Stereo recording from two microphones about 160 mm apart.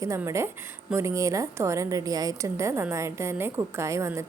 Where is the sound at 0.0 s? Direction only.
20° right (ahead or behind).